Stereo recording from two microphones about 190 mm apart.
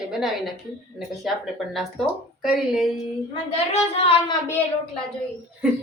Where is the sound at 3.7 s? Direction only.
30° left (ahead or behind).